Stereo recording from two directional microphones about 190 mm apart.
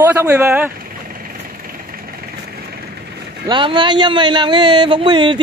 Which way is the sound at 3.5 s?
25° right (ahead or behind).